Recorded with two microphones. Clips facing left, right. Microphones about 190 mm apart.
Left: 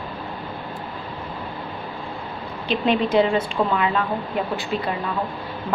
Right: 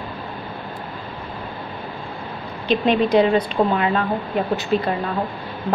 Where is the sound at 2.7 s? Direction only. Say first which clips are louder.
Right 3 dB; 15° right (ahead or behind).